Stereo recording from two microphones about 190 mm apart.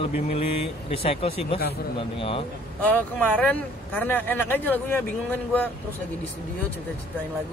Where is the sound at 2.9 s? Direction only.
10° left (ahead or behind).